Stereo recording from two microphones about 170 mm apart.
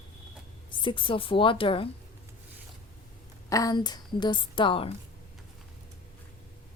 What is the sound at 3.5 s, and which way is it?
A woman's voice, 20° left (ahead or behind).